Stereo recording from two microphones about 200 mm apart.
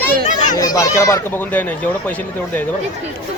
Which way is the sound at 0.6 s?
15° left (ahead or behind).